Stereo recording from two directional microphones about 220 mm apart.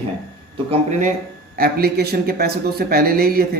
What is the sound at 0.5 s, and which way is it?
Speech, 30° right (ahead or behind).